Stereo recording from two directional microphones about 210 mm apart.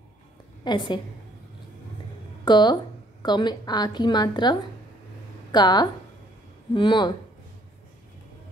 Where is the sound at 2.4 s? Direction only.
20° left (ahead or behind).